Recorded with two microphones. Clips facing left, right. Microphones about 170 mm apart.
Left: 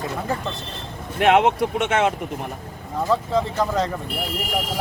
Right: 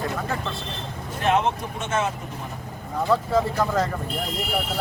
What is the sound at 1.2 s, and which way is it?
Speech, 75° left (ahead or behind).